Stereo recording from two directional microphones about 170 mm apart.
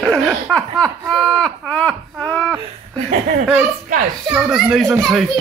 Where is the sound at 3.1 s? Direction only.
50° right (ahead or behind).